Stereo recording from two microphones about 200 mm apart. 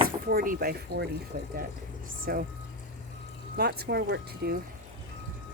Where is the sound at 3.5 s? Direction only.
50° right (ahead or behind).